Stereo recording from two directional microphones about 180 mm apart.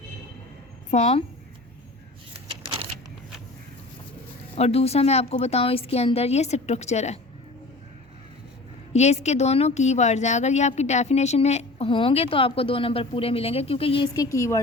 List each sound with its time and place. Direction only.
0.9 s a woman's voice: 40° left (ahead or behind)
4.5 s speech: 35° left (ahead or behind)
8.9 s speech: 40° left (ahead or behind); by 14.6 s 15° left (ahead or behind)